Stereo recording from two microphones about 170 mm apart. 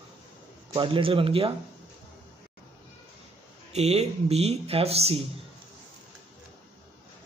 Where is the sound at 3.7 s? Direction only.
40° right (ahead or behind).